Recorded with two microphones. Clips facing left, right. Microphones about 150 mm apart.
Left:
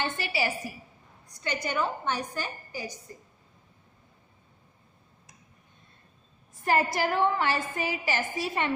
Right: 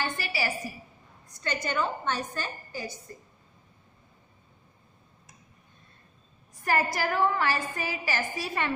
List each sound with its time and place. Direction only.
0.2 s a woman's voice: 20° left (ahead or behind)
6.6 s a woman's voice: 25° left (ahead or behind)